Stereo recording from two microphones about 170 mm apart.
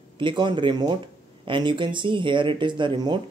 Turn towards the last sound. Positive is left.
turn(degrees=-25)  # may be behind; listen again after turning